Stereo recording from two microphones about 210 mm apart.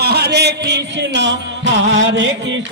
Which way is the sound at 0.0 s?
50° right (ahead or behind).